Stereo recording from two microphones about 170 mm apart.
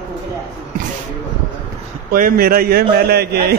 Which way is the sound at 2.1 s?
60° right (ahead or behind).